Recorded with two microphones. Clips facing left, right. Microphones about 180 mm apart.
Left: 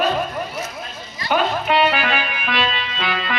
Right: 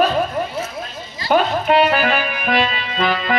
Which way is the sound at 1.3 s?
45° right (ahead or behind).